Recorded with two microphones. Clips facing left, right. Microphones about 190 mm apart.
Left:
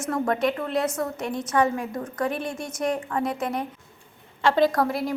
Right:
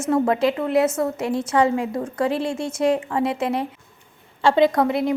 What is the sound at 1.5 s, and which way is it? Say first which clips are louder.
A woman's voice: right 3 dB; 20° right (ahead or behind).